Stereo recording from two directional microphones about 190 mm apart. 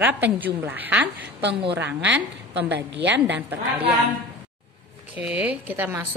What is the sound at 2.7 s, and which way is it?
Speech, 65° right (ahead or behind).